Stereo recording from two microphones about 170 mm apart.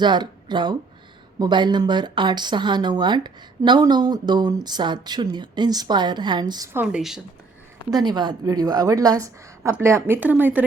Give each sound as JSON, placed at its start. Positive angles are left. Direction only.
{"t": 0.0, "sound": "a woman's voice", "side_deg": -25}
{"t": 6.7, "sound": "speech", "side_deg": -5}
{"t": 7.9, "sound": "a woman's voice", "side_deg": -25}